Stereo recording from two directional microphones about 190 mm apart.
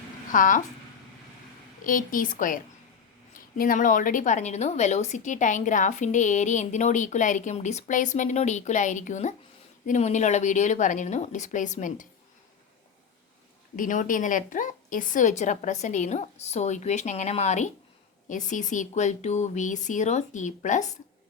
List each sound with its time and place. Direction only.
0.3 s a woman's voice: 45° left (ahead or behind)
1.8 s a woman's voice: 45° left (ahead or behind)
3.6 s a woman's voice: 45° left (ahead or behind)
13.7 s a woman's voice: 45° left (ahead or behind)